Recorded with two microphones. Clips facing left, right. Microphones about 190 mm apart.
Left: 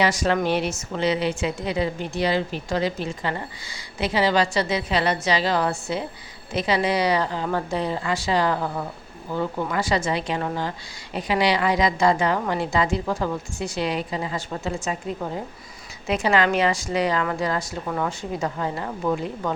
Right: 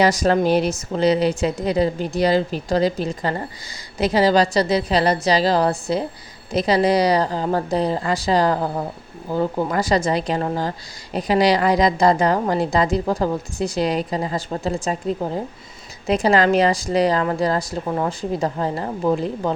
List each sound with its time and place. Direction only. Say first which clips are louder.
0.0 s a woman's voice: right 5 dB; 40° right (ahead or behind)